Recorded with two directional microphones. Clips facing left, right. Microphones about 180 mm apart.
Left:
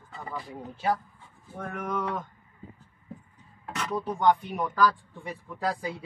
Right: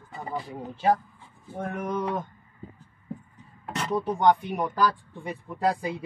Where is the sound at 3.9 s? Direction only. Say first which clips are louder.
Right 2 dB; 15° right (ahead or behind).